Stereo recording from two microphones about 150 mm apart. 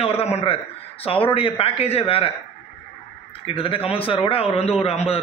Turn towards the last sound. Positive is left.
turn(degrees=45)  # may be behind; listen again after turning